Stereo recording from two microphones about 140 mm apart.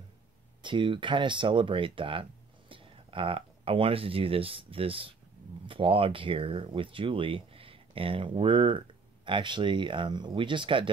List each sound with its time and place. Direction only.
0.6 s speech: 35° right (ahead or behind)